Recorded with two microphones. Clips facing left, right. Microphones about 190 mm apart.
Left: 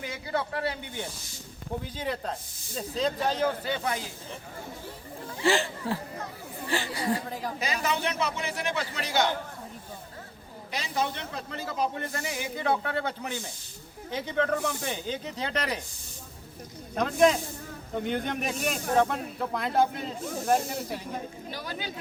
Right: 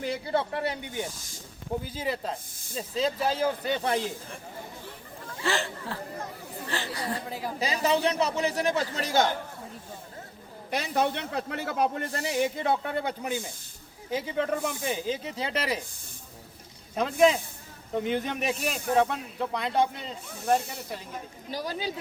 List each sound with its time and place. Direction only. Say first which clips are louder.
0.0 s speech: right 4 dB; 30° right (ahead or behind)
2.0 s speech: right 1 dB; 5° right (ahead or behind)
3.7 s a man's voice: right 3 dB; 30° right (ahead or behind)
5.4 s speech: left 4 dB; 15° left (ahead or behind)
7.3 s speech: even; 5° right (ahead or behind)
7.6 s a man's voice: right 5 dB; 30° right (ahead or behind)
10.7 s a man's voice: right 4 dB; 55° right (ahead or behind)
11.9 s a man's voice: right 2 dB; 35° right (ahead or behind)
12.6 s speech: even; 15° right (ahead or behind)
16.9 s speech: even; 5° right (ahead or behind)
21.5 s a man's voice: right 7 dB; 35° right (ahead or behind)